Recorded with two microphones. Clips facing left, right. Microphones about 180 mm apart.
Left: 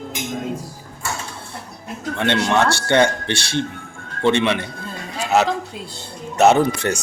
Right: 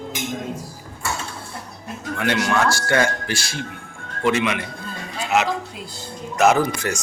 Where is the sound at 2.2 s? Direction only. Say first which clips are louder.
Left 2 dB; 30° left (ahead or behind).